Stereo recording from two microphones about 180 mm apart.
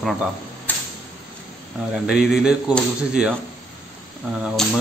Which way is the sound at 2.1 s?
5° right (ahead or behind).